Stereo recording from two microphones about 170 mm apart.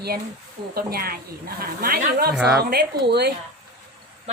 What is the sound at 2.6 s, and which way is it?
Speech, 65° right (ahead or behind).